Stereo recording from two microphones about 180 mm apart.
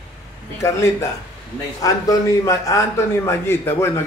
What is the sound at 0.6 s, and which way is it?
A man's voice, 15° left (ahead or behind).